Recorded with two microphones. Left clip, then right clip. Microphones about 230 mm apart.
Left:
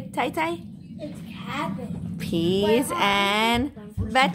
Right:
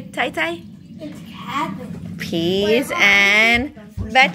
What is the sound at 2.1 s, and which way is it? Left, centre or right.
Speech, centre.